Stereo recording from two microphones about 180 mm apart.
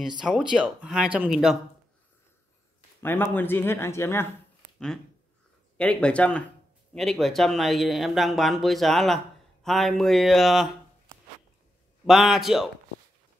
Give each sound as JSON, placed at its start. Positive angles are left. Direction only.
{"t": 0.2, "sound": "speech", "side_deg": -5}
{"t": 3.0, "sound": "speech", "side_deg": 10}
{"t": 4.7, "sound": "speech", "side_deg": 5}
{"t": 12.0, "sound": "speech", "side_deg": 0}